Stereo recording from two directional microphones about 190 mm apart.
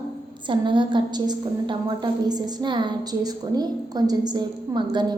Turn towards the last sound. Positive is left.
turn(degrees=-20)  # may be behind; listen again after turning